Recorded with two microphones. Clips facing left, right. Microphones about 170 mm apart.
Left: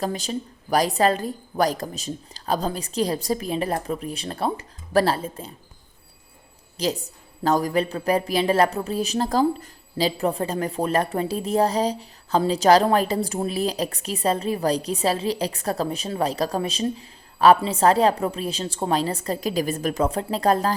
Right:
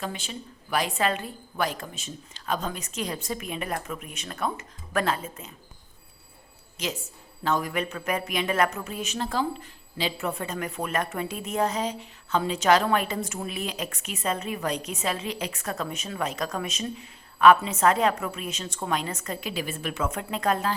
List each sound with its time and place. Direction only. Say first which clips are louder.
0.0 s a woman's voice: left 8 dB; 40° left (ahead or behind)
6.7 s a woman's voice: left 7 dB; 35° left (ahead or behind)